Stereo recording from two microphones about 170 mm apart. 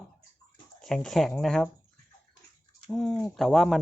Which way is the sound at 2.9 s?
5° left (ahead or behind).